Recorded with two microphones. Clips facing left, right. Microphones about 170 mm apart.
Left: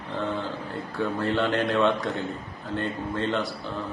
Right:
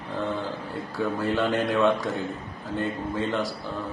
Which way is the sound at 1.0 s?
5° right (ahead or behind).